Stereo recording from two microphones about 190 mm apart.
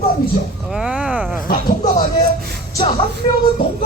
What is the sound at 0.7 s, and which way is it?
Speech, 5° right (ahead or behind).